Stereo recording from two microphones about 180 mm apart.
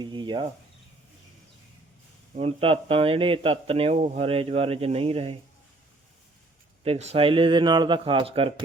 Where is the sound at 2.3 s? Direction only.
30° right (ahead or behind).